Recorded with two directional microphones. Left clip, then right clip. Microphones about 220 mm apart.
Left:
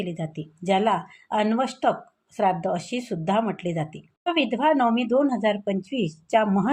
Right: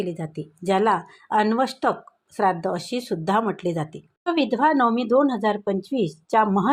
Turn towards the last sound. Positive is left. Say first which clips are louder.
# right 2 dB
turn(degrees=-15)  # may be behind; listen again after turning